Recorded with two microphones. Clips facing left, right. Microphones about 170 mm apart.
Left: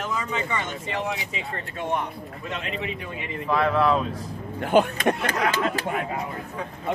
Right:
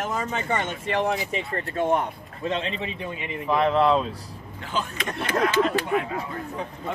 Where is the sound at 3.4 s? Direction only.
20° right (ahead or behind).